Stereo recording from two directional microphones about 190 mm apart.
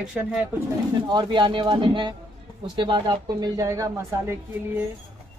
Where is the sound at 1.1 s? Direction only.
25° right (ahead or behind).